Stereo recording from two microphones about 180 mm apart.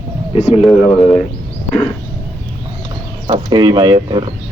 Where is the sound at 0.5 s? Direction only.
Centre (ahead or behind).